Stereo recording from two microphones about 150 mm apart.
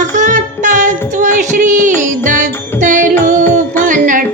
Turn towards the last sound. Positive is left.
turn(degrees=-60)  # may be behind; listen again after turning